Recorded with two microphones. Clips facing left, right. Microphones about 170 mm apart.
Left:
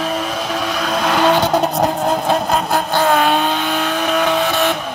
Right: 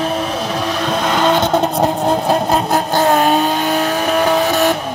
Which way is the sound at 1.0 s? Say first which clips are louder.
Left 1 dB; 5° left (ahead or behind).